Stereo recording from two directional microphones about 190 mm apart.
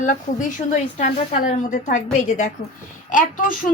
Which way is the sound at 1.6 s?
45° left (ahead or behind).